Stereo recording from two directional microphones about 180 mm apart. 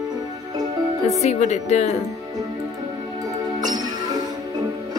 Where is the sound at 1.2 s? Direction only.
35° left (ahead or behind).